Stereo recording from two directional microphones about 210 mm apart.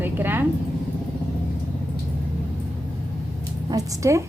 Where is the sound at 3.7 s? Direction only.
15° right (ahead or behind).